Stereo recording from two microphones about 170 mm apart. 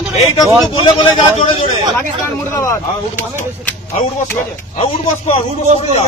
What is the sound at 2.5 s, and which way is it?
Speech, 15° left (ahead or behind).